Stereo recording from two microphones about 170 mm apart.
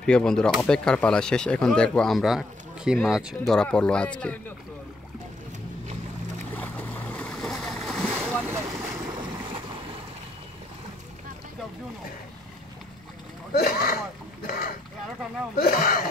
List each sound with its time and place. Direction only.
0.0 s speech: 5° left (ahead or behind)
6.5 s boat: 10° left (ahead or behind)
8.5 s boat: 15° right (ahead or behind)
13.5 s a sound: 65° left (ahead or behind)
15.5 s speech: 60° left (ahead or behind)